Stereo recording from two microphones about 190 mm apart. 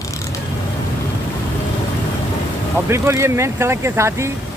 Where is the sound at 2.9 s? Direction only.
15° right (ahead or behind).